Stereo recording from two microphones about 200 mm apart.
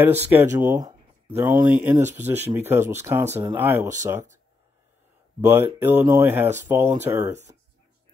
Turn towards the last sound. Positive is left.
turn(degrees=-15)  # may be behind; listen again after turning